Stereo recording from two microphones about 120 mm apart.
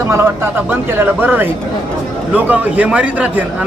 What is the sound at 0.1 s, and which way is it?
A man's voice, 20° right (ahead or behind).